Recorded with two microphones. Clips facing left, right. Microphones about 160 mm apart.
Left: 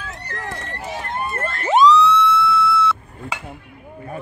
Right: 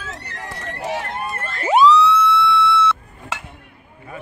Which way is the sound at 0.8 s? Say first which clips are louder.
Right 7 dB; 70° right (ahead or behind).